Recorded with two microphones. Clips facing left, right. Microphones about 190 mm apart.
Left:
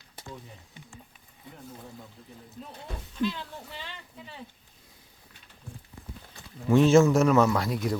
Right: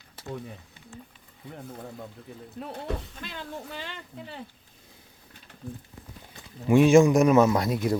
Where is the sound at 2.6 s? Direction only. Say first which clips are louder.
Right 6 dB; 75° right (ahead or behind).